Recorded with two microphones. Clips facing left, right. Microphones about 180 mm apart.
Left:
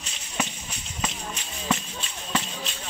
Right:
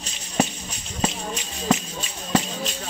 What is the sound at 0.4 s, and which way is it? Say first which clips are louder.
Music: right 8 dB; 35° right (ahead or behind).